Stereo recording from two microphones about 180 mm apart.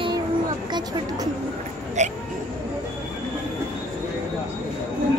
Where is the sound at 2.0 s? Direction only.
40° right (ahead or behind).